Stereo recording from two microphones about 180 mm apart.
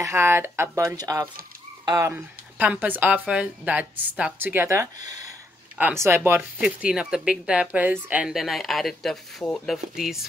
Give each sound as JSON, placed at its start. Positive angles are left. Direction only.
{"t": 0.0, "sound": "speech", "side_deg": -15}